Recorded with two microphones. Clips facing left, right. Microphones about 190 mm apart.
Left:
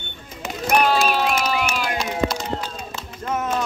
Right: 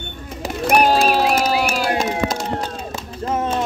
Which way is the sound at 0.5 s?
45° right (ahead or behind).